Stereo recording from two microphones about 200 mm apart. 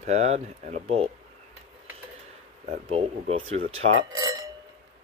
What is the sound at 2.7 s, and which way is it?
Speech, 30° right (ahead or behind).